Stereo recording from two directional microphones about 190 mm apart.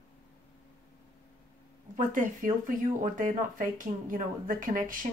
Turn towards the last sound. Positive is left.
turn(degrees=-45)  # may be behind; listen again after turning